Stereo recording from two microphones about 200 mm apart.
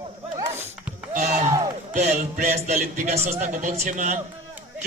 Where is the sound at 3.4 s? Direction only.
35° right (ahead or behind).